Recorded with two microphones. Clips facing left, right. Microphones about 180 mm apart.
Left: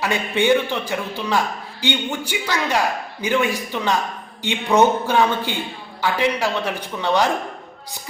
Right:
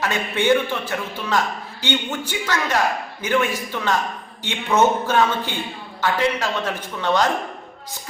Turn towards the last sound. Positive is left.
turn(degrees=10)  # may be behind; listen again after turning